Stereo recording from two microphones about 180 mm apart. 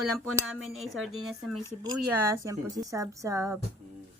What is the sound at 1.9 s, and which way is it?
A woman's voice, 15° right (ahead or behind).